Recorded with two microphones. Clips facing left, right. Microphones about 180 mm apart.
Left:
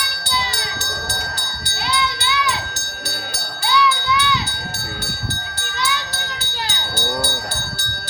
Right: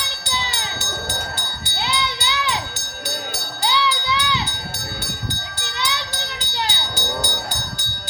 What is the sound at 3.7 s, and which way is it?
Jingle bell, 25° right (ahead or behind).